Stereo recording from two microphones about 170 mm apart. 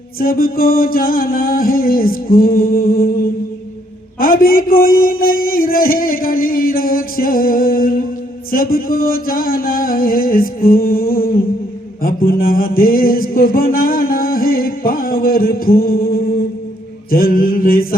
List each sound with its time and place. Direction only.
0.2 s mantra: 60° left (ahead or behind)